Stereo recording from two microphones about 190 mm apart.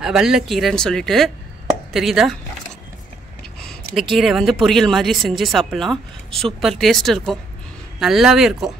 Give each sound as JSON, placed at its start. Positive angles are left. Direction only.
{"t": 0.0, "sound": "a woman's voice", "side_deg": -5}
{"t": 3.6, "sound": "a woman's voice", "side_deg": 0}